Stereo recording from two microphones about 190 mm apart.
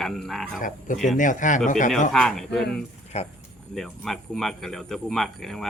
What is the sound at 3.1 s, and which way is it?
Speech, 35° left (ahead or behind).